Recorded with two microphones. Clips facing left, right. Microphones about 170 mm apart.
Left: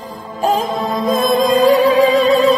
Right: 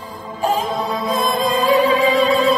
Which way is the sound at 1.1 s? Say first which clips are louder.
Left 6 dB; 40° left (ahead or behind).